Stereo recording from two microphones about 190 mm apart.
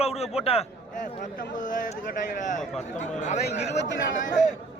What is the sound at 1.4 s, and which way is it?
Speech, 40° left (ahead or behind).